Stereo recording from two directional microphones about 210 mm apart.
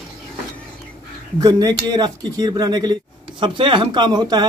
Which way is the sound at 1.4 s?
20° right (ahead or behind).